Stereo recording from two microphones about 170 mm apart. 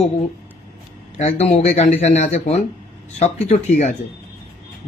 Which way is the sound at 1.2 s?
40° left (ahead or behind).